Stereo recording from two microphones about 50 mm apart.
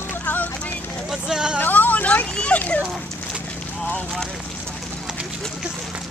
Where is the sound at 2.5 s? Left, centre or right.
Left.